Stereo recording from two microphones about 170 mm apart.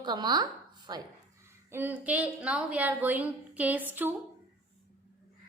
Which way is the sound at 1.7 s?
10° right (ahead or behind).